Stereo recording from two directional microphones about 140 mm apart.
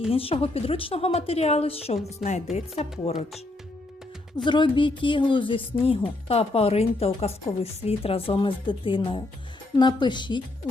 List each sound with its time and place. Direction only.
0.1 s a woman's voice: 40° left (ahead or behind)
4.4 s a woman's voice: 35° left (ahead or behind)